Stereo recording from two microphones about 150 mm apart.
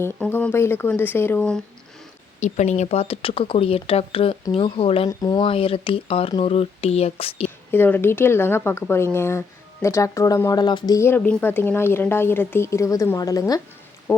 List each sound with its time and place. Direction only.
0.0 s speech: 15° left (ahead or behind)
2.4 s speech: 50° left (ahead or behind)
5.0 s speech: 30° left (ahead or behind)
7.7 s speech: 15° left (ahead or behind)
11.2 s speech: 10° left (ahead or behind)